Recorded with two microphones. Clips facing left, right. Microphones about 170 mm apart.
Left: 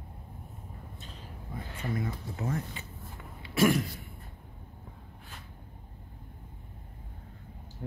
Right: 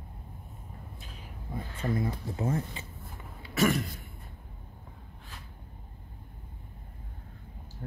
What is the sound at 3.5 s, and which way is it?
Throat clearing, centre (ahead or behind).